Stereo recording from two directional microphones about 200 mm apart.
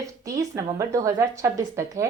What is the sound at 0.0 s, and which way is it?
A woman's voice, 15° right (ahead or behind).